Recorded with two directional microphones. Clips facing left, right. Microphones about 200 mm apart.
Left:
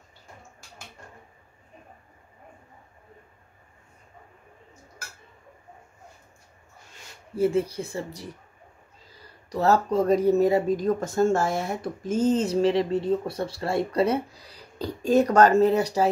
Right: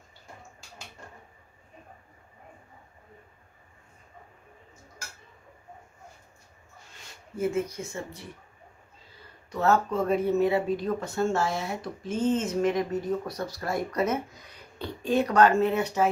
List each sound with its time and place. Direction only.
7.3 s speech: 30° left (ahead or behind)